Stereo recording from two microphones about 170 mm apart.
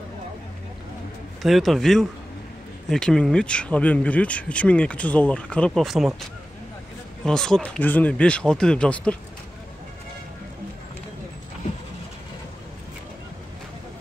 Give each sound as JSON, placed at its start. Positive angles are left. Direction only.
{"t": 1.4, "sound": "speech", "side_deg": 0}
{"t": 7.2, "sound": "speech", "side_deg": 5}